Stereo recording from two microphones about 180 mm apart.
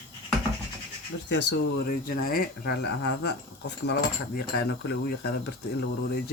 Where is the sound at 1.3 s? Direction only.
75° left (ahead or behind).